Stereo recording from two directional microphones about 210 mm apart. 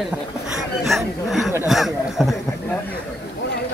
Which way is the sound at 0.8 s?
Centre (ahead or behind).